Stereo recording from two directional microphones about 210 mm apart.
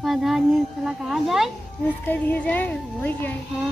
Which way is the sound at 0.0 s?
Centre (ahead or behind).